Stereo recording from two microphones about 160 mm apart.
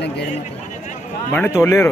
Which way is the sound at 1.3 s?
15° left (ahead or behind).